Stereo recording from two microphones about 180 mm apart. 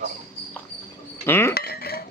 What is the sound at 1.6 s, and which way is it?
Cutlery, 60° left (ahead or behind).